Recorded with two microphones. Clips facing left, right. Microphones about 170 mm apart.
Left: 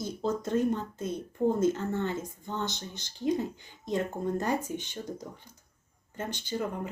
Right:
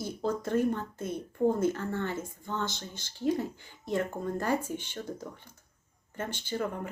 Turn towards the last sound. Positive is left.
turn(degrees=15)  # may be behind; listen again after turning